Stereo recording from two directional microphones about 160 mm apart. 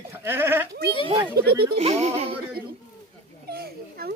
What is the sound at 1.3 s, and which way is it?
Speech, 80° right.